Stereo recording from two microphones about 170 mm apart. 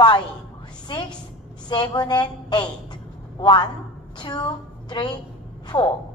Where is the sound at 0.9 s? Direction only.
30° left (ahead or behind).